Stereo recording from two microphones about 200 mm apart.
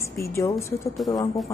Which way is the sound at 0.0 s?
15° left (ahead or behind).